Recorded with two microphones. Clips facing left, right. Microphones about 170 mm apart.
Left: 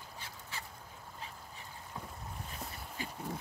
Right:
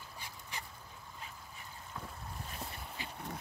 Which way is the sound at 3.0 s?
45° left (ahead or behind).